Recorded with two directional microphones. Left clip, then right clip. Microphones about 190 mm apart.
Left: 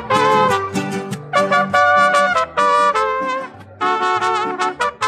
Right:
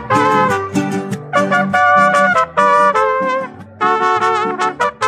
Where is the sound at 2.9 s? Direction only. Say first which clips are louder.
Right 4 dB; 40° right (ahead or behind).